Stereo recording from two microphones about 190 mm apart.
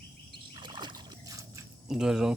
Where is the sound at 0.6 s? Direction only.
25° right (ahead or behind).